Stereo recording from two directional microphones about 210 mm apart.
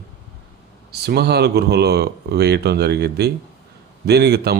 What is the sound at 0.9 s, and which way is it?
Speech, 50° right (ahead or behind).